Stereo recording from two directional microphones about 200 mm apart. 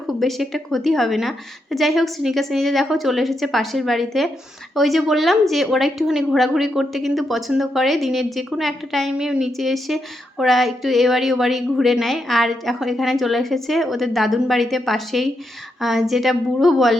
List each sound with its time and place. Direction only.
0.1 s speech: centre (ahead or behind)